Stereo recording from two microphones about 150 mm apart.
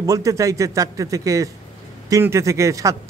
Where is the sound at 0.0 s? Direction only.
20° right (ahead or behind).